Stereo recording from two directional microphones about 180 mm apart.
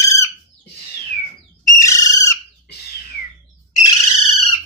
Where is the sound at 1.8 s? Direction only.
20° left (ahead or behind).